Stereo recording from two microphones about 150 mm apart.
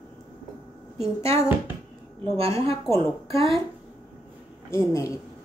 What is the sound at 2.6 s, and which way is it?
Speech, 40° right (ahead or behind).